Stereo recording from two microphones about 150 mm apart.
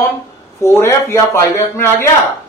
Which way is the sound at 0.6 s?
20° left (ahead or behind).